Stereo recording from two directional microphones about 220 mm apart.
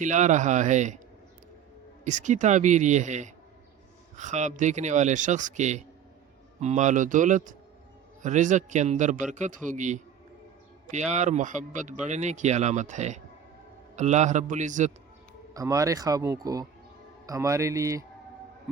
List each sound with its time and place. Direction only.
0.0 s a man's voice: 35° right (ahead or behind)
2.0 s a man's voice: 35° right (ahead or behind)
15.5 s speech: 15° right (ahead or behind)